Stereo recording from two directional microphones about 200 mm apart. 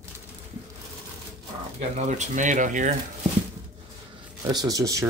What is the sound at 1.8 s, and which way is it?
Speech, 35° right (ahead or behind).